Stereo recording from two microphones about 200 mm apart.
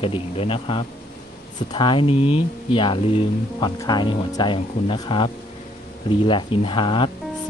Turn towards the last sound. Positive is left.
turn(degrees=25)  # may be behind; listen again after turning